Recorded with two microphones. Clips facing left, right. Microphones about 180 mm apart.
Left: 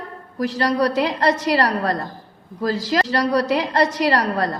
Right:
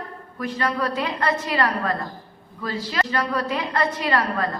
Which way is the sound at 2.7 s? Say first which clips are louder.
Left 5 dB; 90° left.